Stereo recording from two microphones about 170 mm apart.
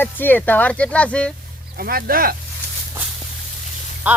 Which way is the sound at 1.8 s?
60° right (ahead or behind).